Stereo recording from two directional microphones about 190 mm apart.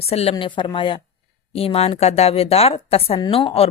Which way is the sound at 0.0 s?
30° left (ahead or behind).